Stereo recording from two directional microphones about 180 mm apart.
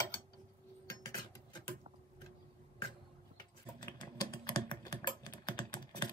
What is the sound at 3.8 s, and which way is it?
Typing, 20° left (ahead or behind).